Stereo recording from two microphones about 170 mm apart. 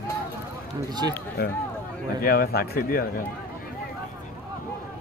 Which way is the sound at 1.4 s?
70° left (ahead or behind).